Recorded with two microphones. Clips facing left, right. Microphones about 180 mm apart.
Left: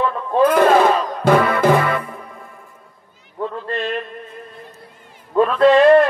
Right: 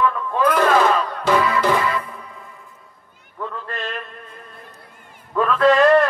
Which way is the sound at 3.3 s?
30° left (ahead or behind).